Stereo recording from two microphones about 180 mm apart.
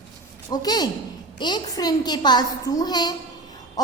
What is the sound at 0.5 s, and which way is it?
A woman's voice, 20° left (ahead or behind).